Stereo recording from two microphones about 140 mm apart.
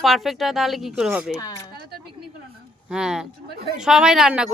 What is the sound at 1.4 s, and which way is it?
Speech, 25° left (ahead or behind).